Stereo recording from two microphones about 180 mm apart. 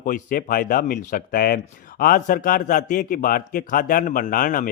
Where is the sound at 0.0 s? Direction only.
50° left (ahead or behind).